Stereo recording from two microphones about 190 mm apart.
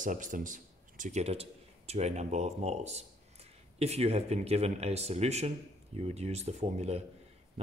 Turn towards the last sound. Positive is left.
turn(degrees=-35)  # may be behind; listen again after turning